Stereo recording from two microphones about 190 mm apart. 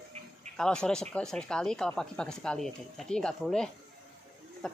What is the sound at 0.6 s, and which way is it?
Speech, 5° left (ahead or behind).